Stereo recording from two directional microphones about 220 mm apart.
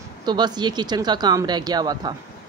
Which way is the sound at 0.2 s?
20° right (ahead or behind).